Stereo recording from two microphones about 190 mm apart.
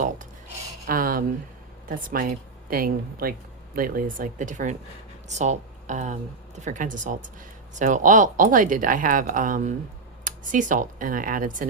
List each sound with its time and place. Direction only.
0.9 s speech: 50° right (ahead or behind)